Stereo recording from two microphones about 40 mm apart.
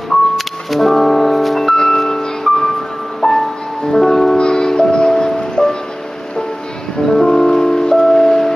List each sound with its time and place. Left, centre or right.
0.7 s music: centre
1.7 s music: centre
4.4 s music: centre
7.1 s music: centre